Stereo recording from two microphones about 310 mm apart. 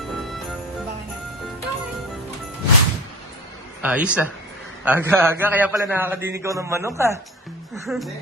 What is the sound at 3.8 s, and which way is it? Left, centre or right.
A man's voice, centre.